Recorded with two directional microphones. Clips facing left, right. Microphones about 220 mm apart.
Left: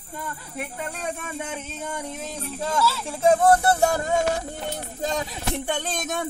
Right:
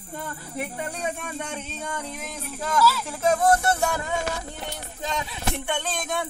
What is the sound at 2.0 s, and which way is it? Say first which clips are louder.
Speech: left 2 dB; 25° left (ahead or behind).